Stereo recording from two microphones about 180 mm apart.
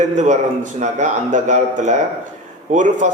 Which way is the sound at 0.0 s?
40° right (ahead or behind).